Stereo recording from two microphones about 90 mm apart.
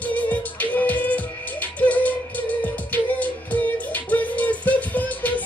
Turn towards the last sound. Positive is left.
turn(degrees=20)  # may be behind; listen again after turning